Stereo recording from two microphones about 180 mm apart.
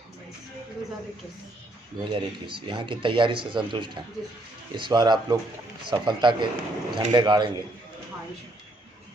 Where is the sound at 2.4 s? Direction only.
30° right (ahead or behind).